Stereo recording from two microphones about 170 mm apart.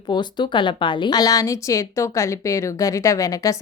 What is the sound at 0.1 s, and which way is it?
A woman's voice, 25° left (ahead or behind).